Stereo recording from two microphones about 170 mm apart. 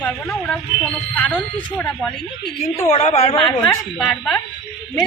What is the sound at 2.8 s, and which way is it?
Speech, 40° left (ahead or behind).